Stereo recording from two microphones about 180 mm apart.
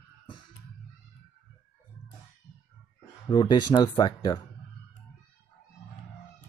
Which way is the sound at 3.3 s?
25° left (ahead or behind).